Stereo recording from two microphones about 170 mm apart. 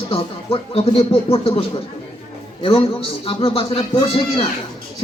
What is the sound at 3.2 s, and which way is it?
Speech, 35° left (ahead or behind).